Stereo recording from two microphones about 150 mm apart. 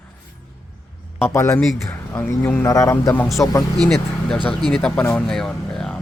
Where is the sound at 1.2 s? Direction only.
15° left (ahead or behind).